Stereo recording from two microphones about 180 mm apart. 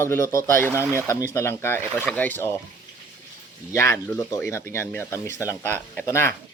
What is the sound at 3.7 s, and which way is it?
Speech, 15° left (ahead or behind).